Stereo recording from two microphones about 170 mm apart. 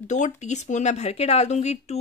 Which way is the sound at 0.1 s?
45° left (ahead or behind).